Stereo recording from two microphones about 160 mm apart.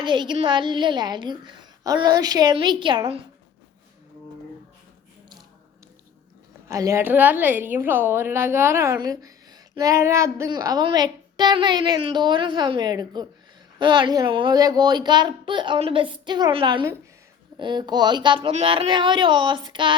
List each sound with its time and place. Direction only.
0.0 s a woman's voice: 30° right (ahead or behind)
6.7 s a woman's voice: 20° right (ahead or behind)